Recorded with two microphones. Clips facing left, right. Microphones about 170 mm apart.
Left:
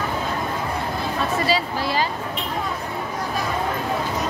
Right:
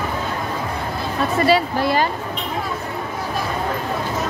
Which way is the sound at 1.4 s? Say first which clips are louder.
Right 6 dB; 55° right (ahead or behind).